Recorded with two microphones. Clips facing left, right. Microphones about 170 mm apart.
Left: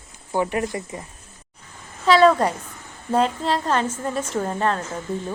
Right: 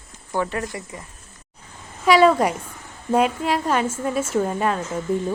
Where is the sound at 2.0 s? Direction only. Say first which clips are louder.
Even; 10° right (ahead or behind).